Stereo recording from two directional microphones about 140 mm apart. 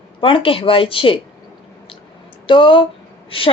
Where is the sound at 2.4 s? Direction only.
35° left (ahead or behind).